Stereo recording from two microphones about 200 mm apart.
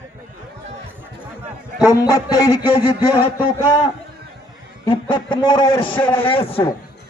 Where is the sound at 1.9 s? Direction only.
20° left (ahead or behind).